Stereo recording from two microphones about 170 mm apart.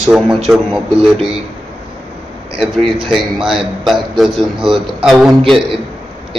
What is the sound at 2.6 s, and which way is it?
A man's voice, centre (ahead or behind).